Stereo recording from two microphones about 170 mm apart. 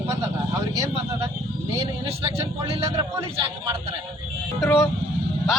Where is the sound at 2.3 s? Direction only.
15° right (ahead or behind).